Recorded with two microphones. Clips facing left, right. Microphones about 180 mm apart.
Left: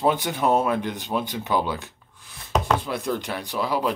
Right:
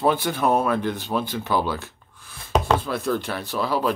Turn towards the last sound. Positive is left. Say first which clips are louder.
# right 1 dB
turn(degrees=15)  # may be behind; listen again after turning